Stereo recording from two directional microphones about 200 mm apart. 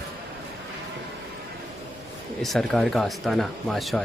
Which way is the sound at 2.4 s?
Centre (ahead or behind).